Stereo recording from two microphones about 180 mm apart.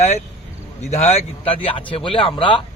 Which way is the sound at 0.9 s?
40° left (ahead or behind).